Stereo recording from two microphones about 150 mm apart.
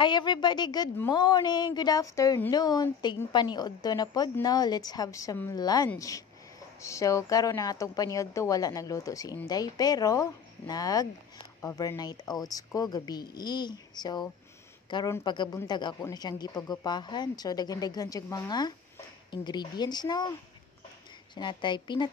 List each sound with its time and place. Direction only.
0.0 s a woman's voice: 30° left (ahead or behind)
21.4 s a woman's voice: 30° left (ahead or behind)